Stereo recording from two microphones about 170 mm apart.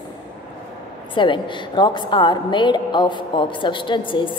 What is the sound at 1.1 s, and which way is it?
A woman's voice, 30° left (ahead or behind).